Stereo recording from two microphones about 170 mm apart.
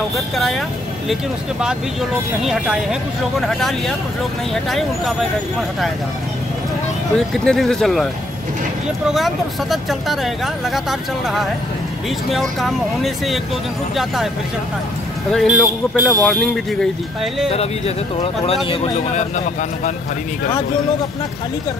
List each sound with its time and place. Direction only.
0.4 s speech: centre (ahead or behind)
2.4 s speech: 5° right (ahead or behind)
7.4 s speech: 5° left (ahead or behind)
15.3 s speech: 5° left (ahead or behind)
17.5 s speech: 35° left (ahead or behind)